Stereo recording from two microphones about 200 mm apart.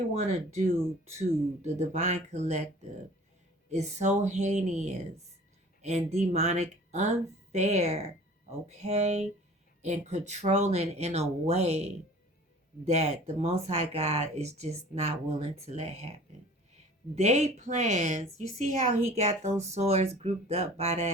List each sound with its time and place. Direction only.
0.2 s speech: 35° right (ahead or behind)
1.6 s speech: 35° right (ahead or behind)
3.7 s speech: 35° right (ahead or behind)